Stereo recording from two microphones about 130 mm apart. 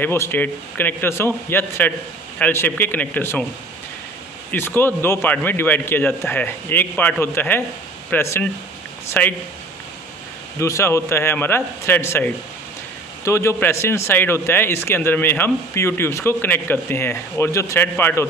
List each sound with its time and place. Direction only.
0.0 s speech: 15° left (ahead or behind)
4.5 s speech: 15° left (ahead or behind)
10.6 s a man's voice: 20° left (ahead or behind)